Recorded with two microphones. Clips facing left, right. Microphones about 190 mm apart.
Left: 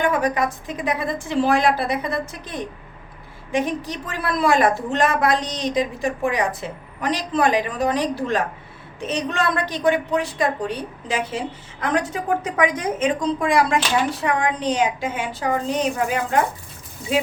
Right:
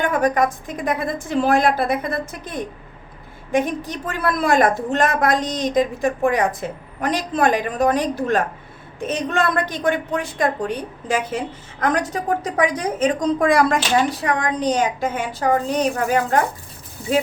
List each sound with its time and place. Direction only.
0.0 s a woman's voice: 45° right (ahead or behind)